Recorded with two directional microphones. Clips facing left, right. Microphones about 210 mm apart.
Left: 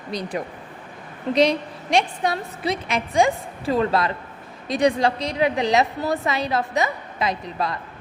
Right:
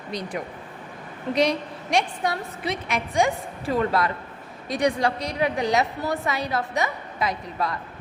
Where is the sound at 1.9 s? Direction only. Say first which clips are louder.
Left 3 dB; 25° left (ahead or behind).